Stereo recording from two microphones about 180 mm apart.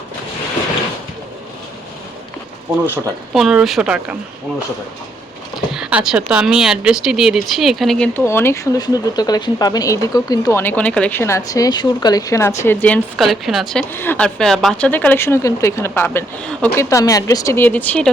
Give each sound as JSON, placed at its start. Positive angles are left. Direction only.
{"t": 3.3, "sound": "speech", "side_deg": 0}
{"t": 5.7, "sound": "speech", "side_deg": -5}
{"t": 16.9, "sound": "speech", "side_deg": 20}